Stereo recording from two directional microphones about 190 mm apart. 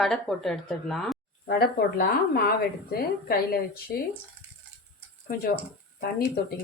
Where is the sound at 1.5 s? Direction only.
55° left (ahead or behind).